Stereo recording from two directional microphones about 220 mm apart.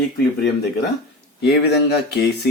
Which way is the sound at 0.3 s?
45° left (ahead or behind).